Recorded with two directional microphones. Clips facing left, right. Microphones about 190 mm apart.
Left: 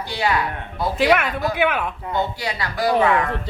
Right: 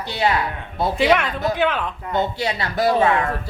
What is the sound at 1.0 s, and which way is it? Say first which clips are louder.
Speech: left 1 dB; 5° left (ahead or behind).